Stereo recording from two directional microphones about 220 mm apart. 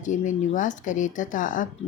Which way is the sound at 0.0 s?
35° left (ahead or behind).